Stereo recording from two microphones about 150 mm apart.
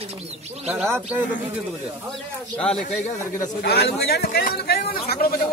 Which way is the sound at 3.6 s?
90° left.